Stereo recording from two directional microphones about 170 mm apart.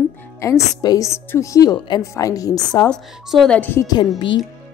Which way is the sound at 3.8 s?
25° left (ahead or behind).